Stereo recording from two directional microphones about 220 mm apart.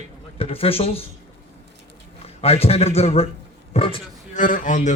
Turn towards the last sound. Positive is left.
turn(degrees=35)  # may be behind; listen again after turning